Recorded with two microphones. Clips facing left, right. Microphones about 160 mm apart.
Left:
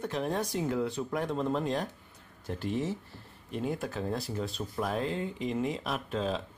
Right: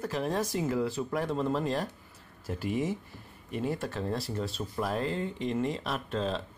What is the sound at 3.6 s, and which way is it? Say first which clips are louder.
Speech: right 1 dB; centre (ahead or behind).